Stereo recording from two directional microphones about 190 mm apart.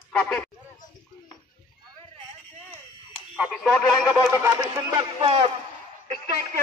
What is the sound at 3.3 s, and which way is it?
Speech, centre (ahead or behind).